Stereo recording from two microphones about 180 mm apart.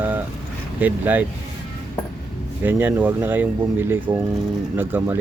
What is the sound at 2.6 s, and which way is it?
Speech, 10° right (ahead or behind).